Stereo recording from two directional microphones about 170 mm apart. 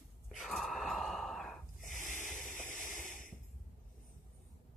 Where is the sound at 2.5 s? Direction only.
50° left (ahead or behind).